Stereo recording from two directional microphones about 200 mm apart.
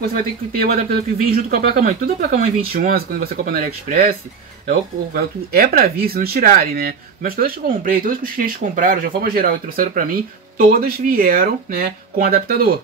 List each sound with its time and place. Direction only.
0.1 s speech: 45° right (ahead or behind)